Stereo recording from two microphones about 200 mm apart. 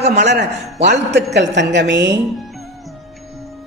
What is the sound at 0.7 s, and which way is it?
Speech, 35° right (ahead or behind).